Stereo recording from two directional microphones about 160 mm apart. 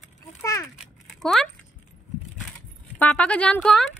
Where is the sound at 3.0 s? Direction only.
10° left (ahead or behind).